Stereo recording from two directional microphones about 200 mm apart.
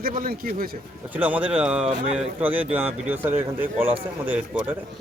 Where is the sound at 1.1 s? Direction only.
10° right (ahead or behind).